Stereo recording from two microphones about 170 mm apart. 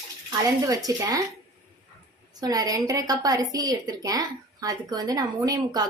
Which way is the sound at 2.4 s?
20° right (ahead or behind).